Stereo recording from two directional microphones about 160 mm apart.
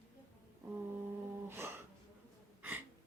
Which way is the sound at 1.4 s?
15° right (ahead or behind).